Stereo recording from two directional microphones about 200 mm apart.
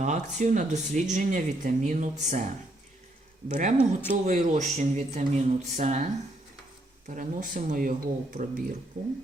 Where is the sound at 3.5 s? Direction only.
35° right (ahead or behind).